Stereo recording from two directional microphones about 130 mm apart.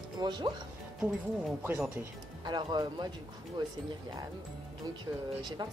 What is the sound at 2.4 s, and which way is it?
Speech, 35° right (ahead or behind).